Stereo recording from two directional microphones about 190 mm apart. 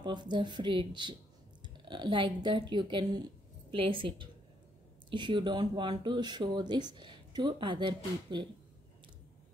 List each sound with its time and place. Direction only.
0.0 s speech: 25° right (ahead or behind)